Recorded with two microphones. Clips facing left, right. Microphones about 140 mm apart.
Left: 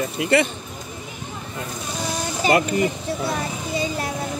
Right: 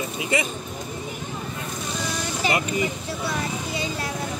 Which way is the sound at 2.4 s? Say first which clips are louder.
Left 6 dB; 50° left (ahead or behind).